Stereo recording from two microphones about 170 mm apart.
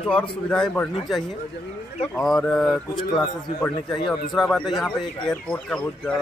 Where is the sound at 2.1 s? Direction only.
Centre (ahead or behind).